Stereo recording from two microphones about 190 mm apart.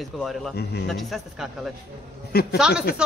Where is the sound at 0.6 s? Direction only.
60° left (ahead or behind).